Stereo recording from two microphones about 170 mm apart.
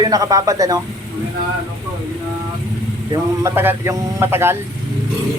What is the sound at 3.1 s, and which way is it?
Speech, 15° right (ahead or behind).